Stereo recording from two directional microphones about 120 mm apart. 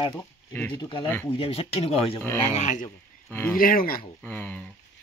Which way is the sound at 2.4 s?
85° left.